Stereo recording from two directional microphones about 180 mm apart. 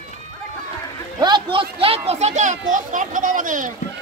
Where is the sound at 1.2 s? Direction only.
25° right (ahead or behind).